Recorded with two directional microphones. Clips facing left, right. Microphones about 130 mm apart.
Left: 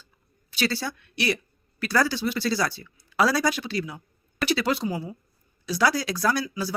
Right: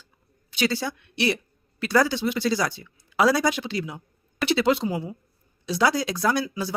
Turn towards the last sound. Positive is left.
turn(degrees=-20)  # may be behind; listen again after turning